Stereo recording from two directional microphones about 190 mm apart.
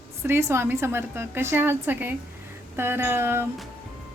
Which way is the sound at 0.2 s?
15° right (ahead or behind).